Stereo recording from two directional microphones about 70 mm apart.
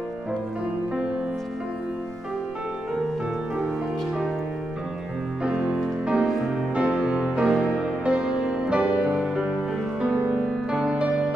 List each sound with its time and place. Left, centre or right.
5.4 s music: centre